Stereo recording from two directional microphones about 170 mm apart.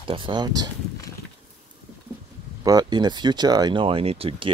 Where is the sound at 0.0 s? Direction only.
30° right (ahead or behind).